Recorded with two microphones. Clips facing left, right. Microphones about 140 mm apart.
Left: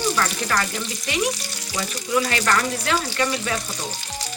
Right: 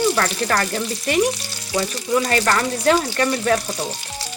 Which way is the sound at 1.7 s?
30° right (ahead or behind).